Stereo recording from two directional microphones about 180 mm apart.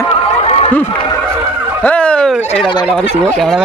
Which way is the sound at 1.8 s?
5° left (ahead or behind).